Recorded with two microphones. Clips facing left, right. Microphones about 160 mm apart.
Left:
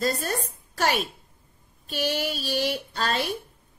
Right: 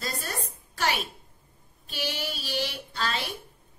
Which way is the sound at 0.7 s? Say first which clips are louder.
Left 4 dB; 45° left (ahead or behind).